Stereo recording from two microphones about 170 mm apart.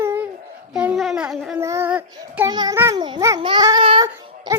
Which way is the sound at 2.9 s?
25° right (ahead or behind).